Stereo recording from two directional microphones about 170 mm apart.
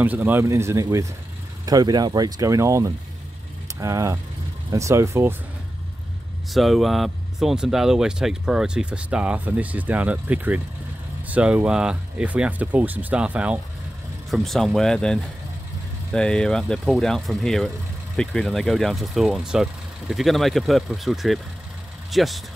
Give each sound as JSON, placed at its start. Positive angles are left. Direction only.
{"t": 0.0, "sound": "speech", "side_deg": -10}
{"t": 6.5, "sound": "speech", "side_deg": 0}